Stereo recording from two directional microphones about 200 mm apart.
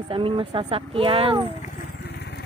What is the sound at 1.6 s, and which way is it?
Vehicle, 40° left (ahead or behind).